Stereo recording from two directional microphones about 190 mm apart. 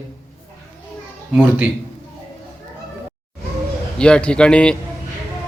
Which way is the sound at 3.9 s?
5° left (ahead or behind).